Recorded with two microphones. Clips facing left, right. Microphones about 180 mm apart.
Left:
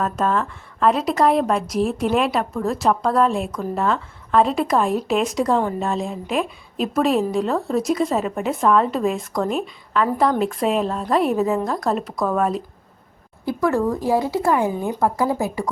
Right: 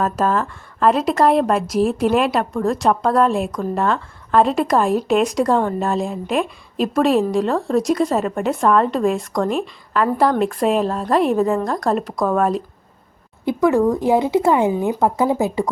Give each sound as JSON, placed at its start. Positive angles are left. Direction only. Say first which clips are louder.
{"t": 0.0, "sound": "a woman's voice", "louder": "right 2 dB", "side_deg": 0}
{"t": 13.4, "sound": "speech", "louder": "right 4 dB", "side_deg": -20}